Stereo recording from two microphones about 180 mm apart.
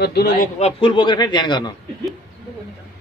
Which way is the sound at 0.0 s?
65° left (ahead or behind).